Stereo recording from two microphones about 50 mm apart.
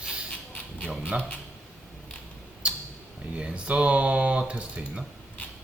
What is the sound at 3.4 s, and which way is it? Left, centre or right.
Speech, right.